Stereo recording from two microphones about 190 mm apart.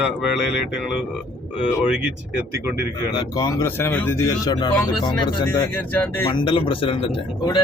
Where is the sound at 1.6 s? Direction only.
5° right (ahead or behind).